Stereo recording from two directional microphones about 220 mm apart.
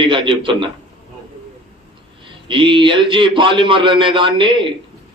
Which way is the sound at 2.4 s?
20° right (ahead or behind).